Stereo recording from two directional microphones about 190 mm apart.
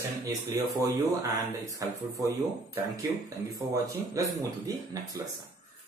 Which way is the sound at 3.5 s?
15° right (ahead or behind).